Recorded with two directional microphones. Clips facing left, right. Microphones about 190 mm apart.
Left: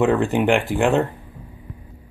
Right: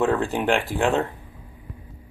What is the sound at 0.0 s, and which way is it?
Speech, 5° left (ahead or behind).